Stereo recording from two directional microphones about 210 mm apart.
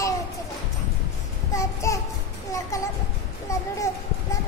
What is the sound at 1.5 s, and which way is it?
Child singing, 15° left (ahead or behind).